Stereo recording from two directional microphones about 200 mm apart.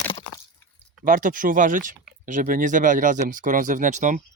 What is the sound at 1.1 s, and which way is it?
Speech, 40° right (ahead or behind).